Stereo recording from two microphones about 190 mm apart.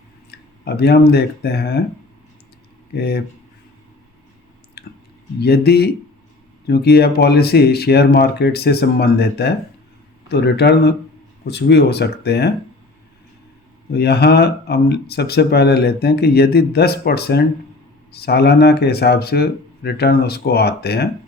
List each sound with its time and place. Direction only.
0.3 s speech: 60° left (ahead or behind)
2.9 s speech: 55° left (ahead or behind)
4.8 s a sound: 55° left (ahead or behind)
5.4 s speech: 60° left (ahead or behind)
13.9 s speech: 60° left (ahead or behind)